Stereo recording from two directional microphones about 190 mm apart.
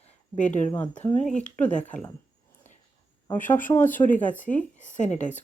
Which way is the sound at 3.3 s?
10° left (ahead or behind).